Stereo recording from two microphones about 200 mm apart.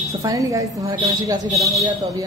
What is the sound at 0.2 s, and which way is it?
A woman's voice, 15° right (ahead or behind).